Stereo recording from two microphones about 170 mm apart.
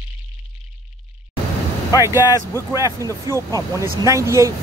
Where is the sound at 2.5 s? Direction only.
15° right (ahead or behind).